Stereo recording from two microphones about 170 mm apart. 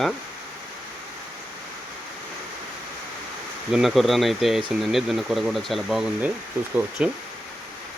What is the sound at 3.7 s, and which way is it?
Speech, centre (ahead or behind).